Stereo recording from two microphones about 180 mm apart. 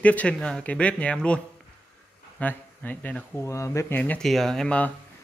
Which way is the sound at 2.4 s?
10° left (ahead or behind).